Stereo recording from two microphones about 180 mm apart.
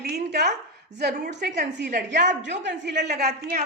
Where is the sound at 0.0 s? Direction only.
65° right (ahead or behind).